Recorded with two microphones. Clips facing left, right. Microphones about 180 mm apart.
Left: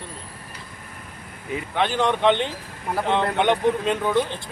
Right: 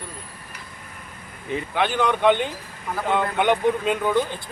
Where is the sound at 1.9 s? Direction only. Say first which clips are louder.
Left 1 dB; 25° left (ahead or behind).